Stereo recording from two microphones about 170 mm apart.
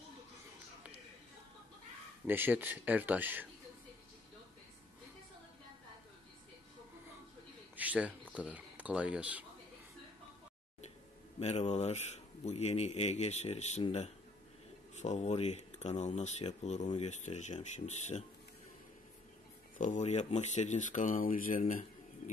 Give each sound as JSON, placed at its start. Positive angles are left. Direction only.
{"t": 2.2, "sound": "speech", "side_deg": -10}
{"t": 7.7, "sound": "a sound", "side_deg": -10}
{"t": 8.4, "sound": "speech", "side_deg": -10}
{"t": 11.3, "sound": "speech", "side_deg": 40}
{"t": 19.8, "sound": "speech", "side_deg": 45}